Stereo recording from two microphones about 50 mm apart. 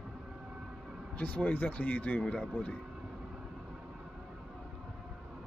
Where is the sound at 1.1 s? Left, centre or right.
Left.